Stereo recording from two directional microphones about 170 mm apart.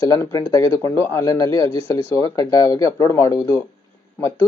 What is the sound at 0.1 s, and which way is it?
Speech, 20° left (ahead or behind).